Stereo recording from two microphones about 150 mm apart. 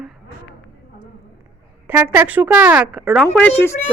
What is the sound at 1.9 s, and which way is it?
Speech, 15° right (ahead or behind).